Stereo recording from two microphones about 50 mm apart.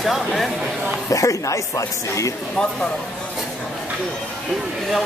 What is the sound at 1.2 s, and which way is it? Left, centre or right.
A woman's voice, left.